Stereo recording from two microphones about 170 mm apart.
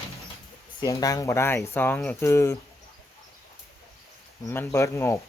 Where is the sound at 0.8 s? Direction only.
20° left (ahead or behind).